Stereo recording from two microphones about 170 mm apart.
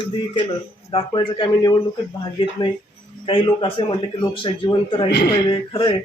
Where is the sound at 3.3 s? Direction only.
30° left (ahead or behind).